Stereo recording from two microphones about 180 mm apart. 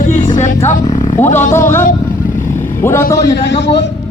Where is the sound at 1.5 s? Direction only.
15° left (ahead or behind).